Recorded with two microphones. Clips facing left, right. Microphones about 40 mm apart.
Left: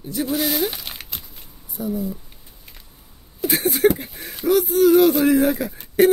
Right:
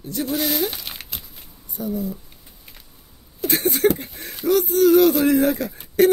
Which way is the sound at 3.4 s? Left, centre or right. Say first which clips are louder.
Left 1 dB; centre.